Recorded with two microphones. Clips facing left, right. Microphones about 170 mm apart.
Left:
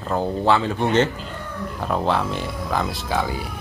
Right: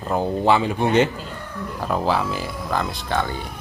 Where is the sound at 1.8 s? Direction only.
Centre (ahead or behind).